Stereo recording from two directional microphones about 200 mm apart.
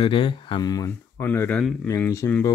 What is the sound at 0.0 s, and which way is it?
Speech, 25° left (ahead or behind).